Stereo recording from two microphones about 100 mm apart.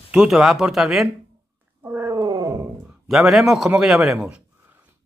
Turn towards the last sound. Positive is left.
turn(degrees=-5)  # may be behind; listen again after turning